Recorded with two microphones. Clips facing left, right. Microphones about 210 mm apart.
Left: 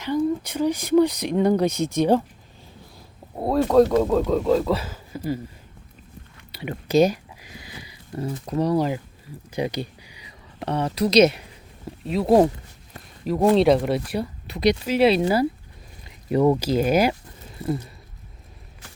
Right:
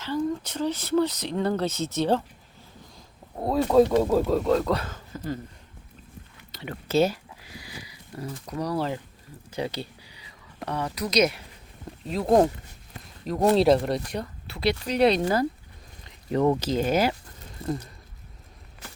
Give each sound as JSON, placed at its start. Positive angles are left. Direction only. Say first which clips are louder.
{"t": 0.0, "sound": "speech", "louder": "left 5 dB", "side_deg": 15}
{"t": 3.3, "sound": "speech", "louder": "left 2 dB", "side_deg": 0}
{"t": 6.5, "sound": "a sound", "louder": "left 5 dB", "side_deg": 15}
{"t": 10.7, "sound": "speech", "louder": "left 7 dB", "side_deg": 25}
{"t": 12.0, "sound": "speech", "louder": "left 3 dB", "side_deg": 5}
{"t": 14.4, "sound": "speech", "louder": "left 6 dB", "side_deg": 20}
{"t": 14.8, "sound": "speech", "louder": "left 1 dB", "side_deg": 5}